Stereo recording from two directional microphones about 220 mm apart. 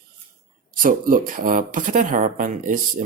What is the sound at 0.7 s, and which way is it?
Speech, 40° right (ahead or behind).